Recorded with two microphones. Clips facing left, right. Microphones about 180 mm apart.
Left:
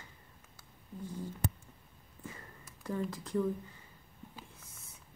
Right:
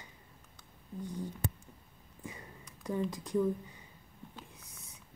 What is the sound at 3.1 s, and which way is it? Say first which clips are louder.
Speech: right 2 dB; 15° right (ahead or behind).